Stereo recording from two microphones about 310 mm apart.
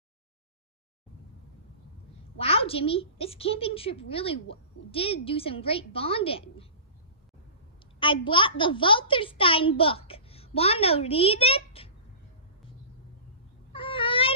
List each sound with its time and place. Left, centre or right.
2.3 s a woman's voice: centre
8.0 s a woman's voice: centre
13.7 s cat: centre